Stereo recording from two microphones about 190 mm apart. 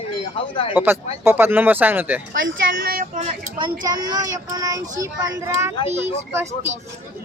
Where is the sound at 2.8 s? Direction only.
50° right (ahead or behind).